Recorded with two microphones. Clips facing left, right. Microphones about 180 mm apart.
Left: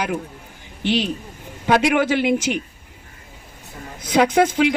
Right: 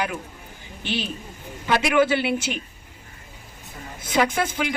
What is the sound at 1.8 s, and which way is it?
Speech, 80° left.